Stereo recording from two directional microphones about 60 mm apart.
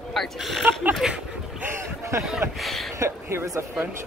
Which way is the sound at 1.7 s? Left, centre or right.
Right.